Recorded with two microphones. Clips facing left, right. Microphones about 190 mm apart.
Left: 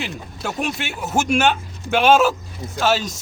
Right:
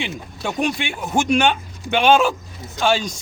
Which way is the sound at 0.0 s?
5° left (ahead or behind).